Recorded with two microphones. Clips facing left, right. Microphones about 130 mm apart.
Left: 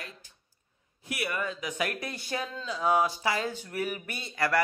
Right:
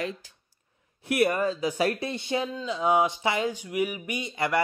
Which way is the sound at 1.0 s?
50° right (ahead or behind).